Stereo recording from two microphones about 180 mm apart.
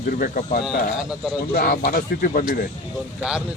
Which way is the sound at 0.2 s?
50° left (ahead or behind).